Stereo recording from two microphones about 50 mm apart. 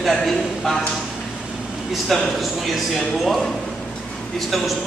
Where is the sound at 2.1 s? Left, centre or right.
Centre.